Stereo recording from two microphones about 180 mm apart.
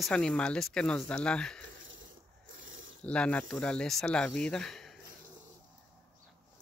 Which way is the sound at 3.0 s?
5° left (ahead or behind).